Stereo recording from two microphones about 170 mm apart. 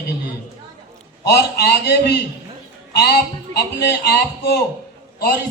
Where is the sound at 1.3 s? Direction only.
70° left (ahead or behind).